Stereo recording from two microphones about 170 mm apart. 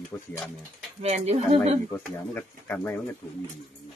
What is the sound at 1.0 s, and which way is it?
Speech, 40° right (ahead or behind).